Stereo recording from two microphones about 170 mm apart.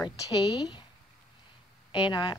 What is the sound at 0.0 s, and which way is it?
Speech, 25° left (ahead or behind).